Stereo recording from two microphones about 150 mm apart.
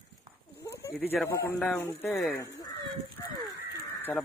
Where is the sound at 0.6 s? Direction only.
20° left (ahead or behind).